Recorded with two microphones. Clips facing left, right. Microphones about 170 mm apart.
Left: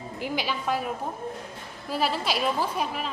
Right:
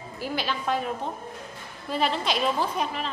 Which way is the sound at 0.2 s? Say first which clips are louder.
Even; 10° left (ahead or behind).